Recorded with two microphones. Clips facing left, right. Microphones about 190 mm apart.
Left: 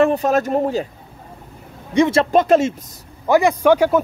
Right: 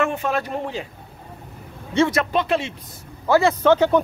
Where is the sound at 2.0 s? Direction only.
25° left (ahead or behind).